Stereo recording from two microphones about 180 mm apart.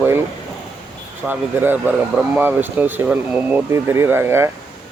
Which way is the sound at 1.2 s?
10° right (ahead or behind).